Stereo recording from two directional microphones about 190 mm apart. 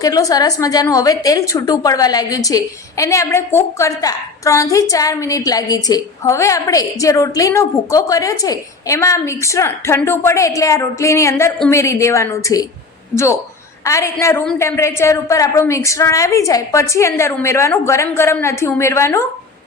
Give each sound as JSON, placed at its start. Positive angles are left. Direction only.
{"t": 0.0, "sound": "a woman's voice", "side_deg": 20}
{"t": 13.8, "sound": "a woman's voice", "side_deg": 15}